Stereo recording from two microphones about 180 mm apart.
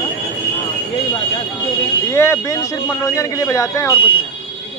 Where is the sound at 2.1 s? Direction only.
15° left (ahead or behind).